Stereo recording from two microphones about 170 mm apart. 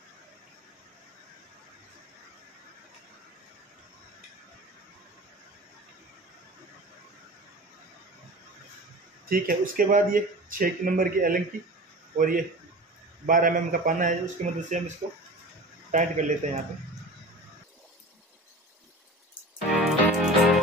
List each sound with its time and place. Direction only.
9.3 s a man's voice: 55° right (ahead or behind)
19.7 s music: centre (ahead or behind)